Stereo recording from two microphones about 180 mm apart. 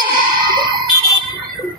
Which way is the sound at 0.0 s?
25° right (ahead or behind).